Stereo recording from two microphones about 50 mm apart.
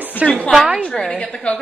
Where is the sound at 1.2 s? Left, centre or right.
Left.